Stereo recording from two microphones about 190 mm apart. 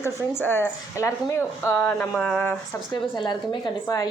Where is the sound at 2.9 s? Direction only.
25° left (ahead or behind).